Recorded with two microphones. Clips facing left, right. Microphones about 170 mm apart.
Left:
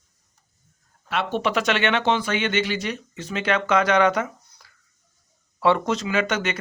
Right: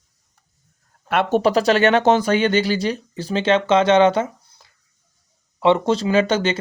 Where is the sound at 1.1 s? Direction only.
50° right (ahead or behind).